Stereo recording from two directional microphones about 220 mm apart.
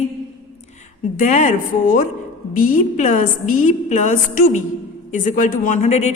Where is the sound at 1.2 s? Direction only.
35° left (ahead or behind).